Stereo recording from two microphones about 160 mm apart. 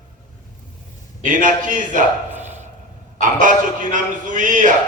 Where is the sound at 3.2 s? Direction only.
55° right (ahead or behind).